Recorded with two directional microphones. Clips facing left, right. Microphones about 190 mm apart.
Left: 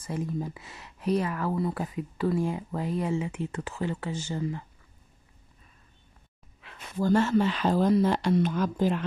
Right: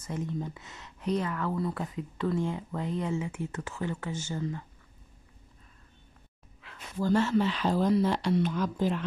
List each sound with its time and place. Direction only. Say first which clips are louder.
1.1 s speech: left 3 dB; 20° left (ahead or behind)
2.3 s speech: left 2 dB; 15° left (ahead or behind)
6.8 s speech: left 2 dB; 50° left (ahead or behind)